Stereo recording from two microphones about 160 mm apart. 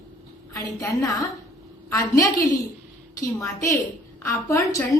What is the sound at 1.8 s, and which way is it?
Speech, 20° left (ahead or behind).